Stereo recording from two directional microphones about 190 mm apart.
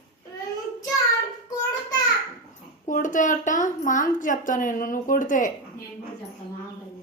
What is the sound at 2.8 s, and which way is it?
A woman's voice, 45° left (ahead or behind).